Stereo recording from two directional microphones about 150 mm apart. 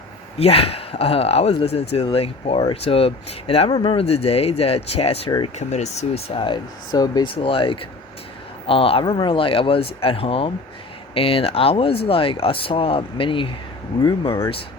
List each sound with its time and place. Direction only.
0.3 s speech: 40° left (ahead or behind)
6.2 s speech: 35° left (ahead or behind)
7.4 s speech: 35° left (ahead or behind)